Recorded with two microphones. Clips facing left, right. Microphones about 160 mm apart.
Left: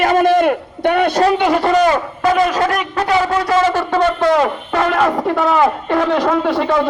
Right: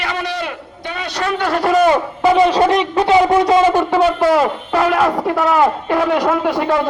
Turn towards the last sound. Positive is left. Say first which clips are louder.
# left 1 dB
turn(degrees=-5)  # may be behind; listen again after turning